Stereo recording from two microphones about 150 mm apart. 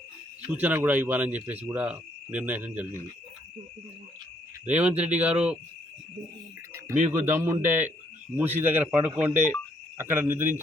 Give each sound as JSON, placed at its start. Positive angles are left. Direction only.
{"t": 0.5, "sound": "speech", "side_deg": -10}
{"t": 4.6, "sound": "speech", "side_deg": -10}
{"t": 6.7, "sound": "speech", "side_deg": -20}